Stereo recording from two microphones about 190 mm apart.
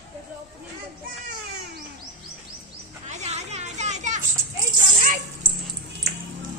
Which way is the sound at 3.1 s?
35° right (ahead or behind).